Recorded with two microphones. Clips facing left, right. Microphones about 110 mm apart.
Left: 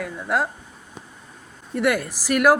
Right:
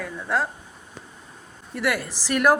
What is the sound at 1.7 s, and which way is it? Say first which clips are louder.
Speech: left 4 dB; 20° left (ahead or behind).